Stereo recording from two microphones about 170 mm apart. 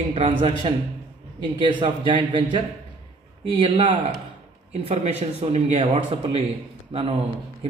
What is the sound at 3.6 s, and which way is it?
Speech, 30° right (ahead or behind).